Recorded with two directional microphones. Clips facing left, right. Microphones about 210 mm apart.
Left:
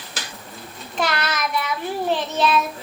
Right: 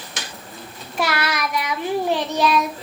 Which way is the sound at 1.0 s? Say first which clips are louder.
Right 1 dB; 10° right (ahead or behind).